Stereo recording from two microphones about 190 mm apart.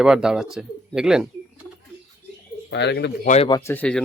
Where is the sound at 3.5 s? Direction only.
20° left (ahead or behind).